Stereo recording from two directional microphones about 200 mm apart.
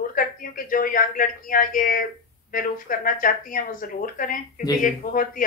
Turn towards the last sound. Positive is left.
turn(degrees=40)  # may be behind; listen again after turning